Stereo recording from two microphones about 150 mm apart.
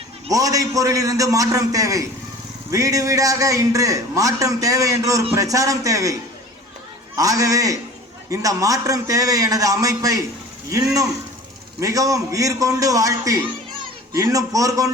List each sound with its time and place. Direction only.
0.3 s a man's voice: 25° right (ahead or behind)
7.2 s a man's voice: 25° right (ahead or behind)